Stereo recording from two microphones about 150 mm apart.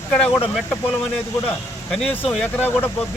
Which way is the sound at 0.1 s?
10° left (ahead or behind).